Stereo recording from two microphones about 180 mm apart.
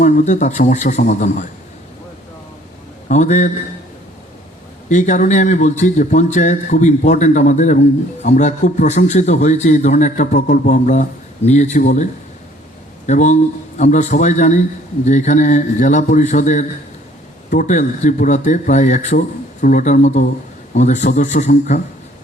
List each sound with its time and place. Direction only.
0.0 s a man's voice: 40° left (ahead or behind)
3.1 s speech: 40° left (ahead or behind)
4.9 s a man's voice: 45° left (ahead or behind)
13.1 s a man's voice: 40° left (ahead or behind)